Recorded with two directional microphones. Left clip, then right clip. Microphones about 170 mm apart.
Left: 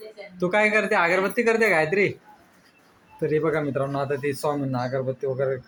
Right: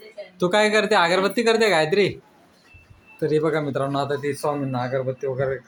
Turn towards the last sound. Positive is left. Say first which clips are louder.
# right 1 dB
turn(degrees=0)  # may be behind; listen again after turning